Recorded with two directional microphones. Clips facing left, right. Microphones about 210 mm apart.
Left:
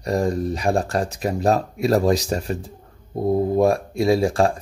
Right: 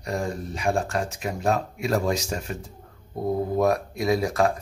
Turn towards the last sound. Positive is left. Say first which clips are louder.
# left 4 dB
turn(degrees=30)  # may be behind; listen again after turning